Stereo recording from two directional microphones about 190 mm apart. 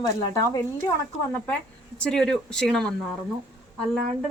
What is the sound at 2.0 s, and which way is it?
Speech, 5° left (ahead or behind).